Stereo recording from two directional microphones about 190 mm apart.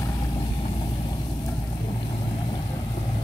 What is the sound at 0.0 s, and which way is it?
Vehicle, 20° left (ahead or behind).